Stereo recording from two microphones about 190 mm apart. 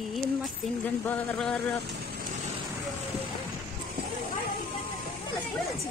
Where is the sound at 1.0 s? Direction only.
5° left (ahead or behind).